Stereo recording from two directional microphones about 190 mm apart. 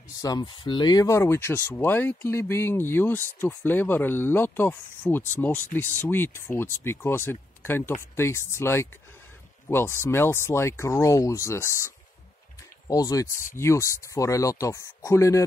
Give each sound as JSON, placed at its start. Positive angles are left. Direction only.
{"t": 0.2, "sound": "speech", "side_deg": 20}